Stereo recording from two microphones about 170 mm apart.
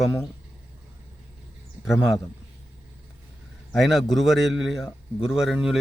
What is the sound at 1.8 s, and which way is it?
Speech, 15° left (ahead or behind).